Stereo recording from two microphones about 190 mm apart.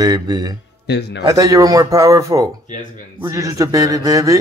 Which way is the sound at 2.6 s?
40° left (ahead or behind).